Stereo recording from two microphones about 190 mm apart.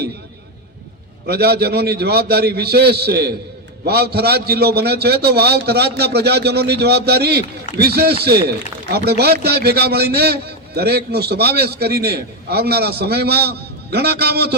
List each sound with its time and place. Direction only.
1.3 s a man's voice: 55° right (ahead or behind)